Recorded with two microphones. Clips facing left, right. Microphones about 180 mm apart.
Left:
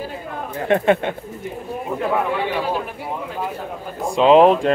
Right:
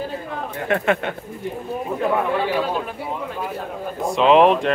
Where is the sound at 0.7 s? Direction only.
25° left (ahead or behind).